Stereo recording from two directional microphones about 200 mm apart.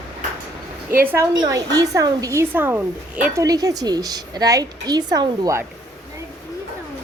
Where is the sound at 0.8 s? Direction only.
10° right (ahead or behind).